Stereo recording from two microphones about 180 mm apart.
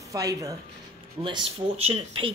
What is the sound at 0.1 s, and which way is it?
Speech, 20° right (ahead or behind).